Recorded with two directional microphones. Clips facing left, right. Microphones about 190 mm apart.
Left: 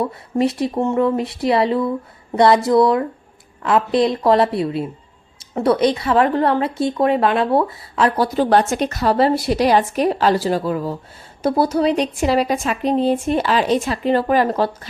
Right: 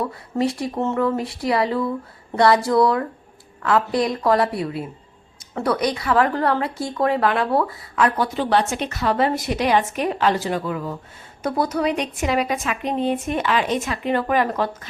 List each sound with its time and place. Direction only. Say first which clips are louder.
0.0 s a woman's voice: left 3 dB; 25° left (ahead or behind)